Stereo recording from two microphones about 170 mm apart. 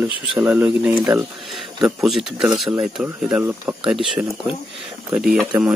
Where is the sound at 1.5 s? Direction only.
Centre (ahead or behind).